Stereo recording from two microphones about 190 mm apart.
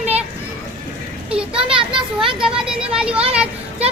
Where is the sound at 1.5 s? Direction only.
30° right (ahead or behind).